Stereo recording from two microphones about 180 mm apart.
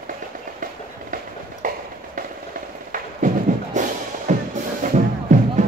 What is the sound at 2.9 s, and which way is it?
Music, 45° right (ahead or behind).